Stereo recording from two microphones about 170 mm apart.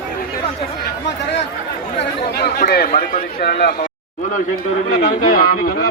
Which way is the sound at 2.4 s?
60° left (ahead or behind).